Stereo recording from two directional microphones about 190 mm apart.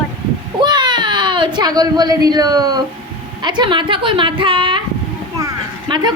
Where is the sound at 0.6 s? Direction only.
25° right (ahead or behind).